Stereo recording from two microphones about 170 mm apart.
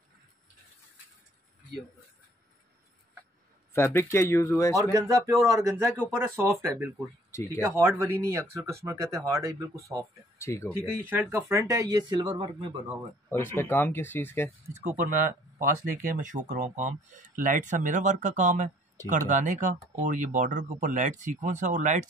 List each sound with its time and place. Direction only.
3.7 s speech: 15° left (ahead or behind)
4.9 s speech: 20° right (ahead or behind)
7.2 s speech: 15° left (ahead or behind)
7.7 s speech: 15° right (ahead or behind)
10.4 s speech: 15° left (ahead or behind)
10.7 s speech: 15° right (ahead or behind); by 12.6 s 30° right (ahead or behind)
13.3 s speech: 15° left (ahead or behind)
14.8 s speech: 45° right (ahead or behind)